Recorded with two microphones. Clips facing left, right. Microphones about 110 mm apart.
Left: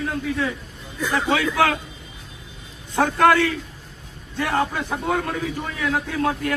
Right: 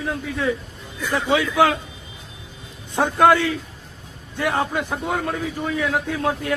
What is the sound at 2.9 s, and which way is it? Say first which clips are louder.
A man's voice: right 1 dB; 20° right (ahead or behind).